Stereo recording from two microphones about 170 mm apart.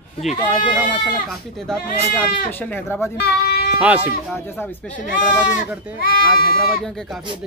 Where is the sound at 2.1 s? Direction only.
10° left (ahead or behind).